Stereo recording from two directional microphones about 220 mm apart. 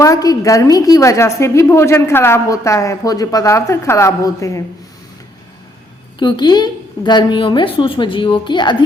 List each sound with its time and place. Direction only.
0.0 s a woman's voice: 15° left (ahead or behind)
6.1 s a woman's voice: 20° left (ahead or behind)